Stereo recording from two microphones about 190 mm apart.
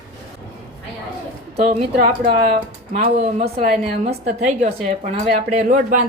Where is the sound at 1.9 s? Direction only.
50° right (ahead or behind).